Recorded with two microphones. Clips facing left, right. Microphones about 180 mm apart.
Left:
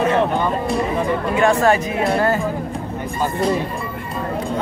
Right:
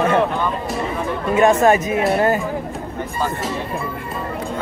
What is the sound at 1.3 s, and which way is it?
Speech, 20° right (ahead or behind).